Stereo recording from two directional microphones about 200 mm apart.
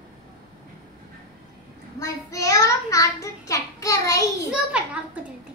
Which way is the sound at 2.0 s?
15° left (ahead or behind).